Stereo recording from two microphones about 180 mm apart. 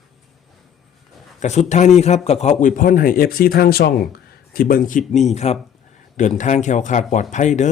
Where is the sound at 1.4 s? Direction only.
40° left (ahead or behind).